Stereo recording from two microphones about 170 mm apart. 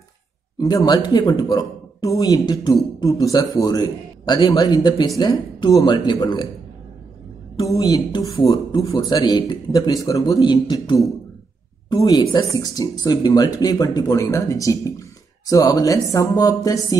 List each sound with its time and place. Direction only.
0.6 s a man's voice: 25° left (ahead or behind)
7.5 s a man's voice: 20° left (ahead or behind)